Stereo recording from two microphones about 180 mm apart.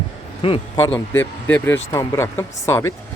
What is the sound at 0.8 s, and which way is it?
Speech, 15° left (ahead or behind).